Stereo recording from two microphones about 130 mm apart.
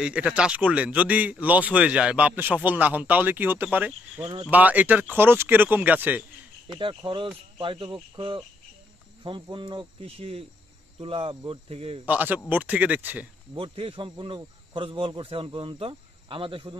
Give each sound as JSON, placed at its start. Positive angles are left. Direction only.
{"t": 0.0, "sound": "speech", "side_deg": -10}
{"t": 7.0, "sound": "cricket", "side_deg": -40}
{"t": 11.0, "sound": "speech", "side_deg": -45}
{"t": 12.1, "sound": "speech", "side_deg": -15}
{"t": 13.6, "sound": "speech", "side_deg": -45}